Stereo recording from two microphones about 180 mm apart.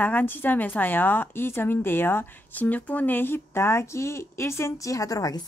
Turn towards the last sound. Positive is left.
turn(degrees=20)  # may be behind; listen again after turning